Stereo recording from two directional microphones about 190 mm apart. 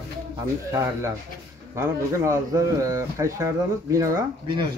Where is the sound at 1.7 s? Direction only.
15° right (ahead or behind).